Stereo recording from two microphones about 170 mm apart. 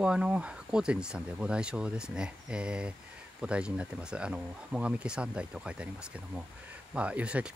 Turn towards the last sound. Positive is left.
turn(degrees=-5)  # may be behind; listen again after turning